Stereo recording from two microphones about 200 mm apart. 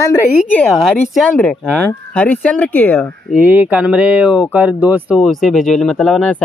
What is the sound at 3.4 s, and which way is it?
Speech, 10° right (ahead or behind).